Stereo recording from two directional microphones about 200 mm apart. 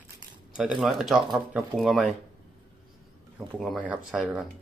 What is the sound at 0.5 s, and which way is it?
Speech, 5° right (ahead or behind).